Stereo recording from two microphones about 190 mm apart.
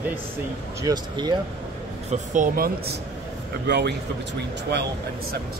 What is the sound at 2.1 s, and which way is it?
Speech, 40° right (ahead or behind).